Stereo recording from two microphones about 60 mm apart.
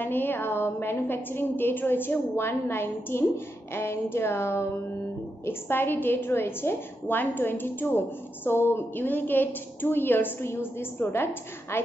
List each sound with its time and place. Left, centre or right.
0.0 s a woman's voice: left